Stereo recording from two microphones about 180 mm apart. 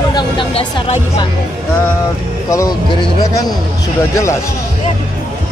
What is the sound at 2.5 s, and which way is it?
Speech, 20° left (ahead or behind).